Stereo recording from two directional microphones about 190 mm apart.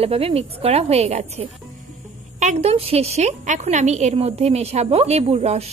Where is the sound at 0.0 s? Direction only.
30° right (ahead or behind).